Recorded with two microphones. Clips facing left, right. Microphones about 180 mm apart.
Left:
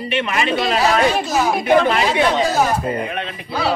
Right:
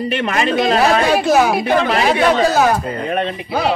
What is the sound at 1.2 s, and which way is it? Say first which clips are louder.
Speech: right 6 dB; 65° right (ahead or behind).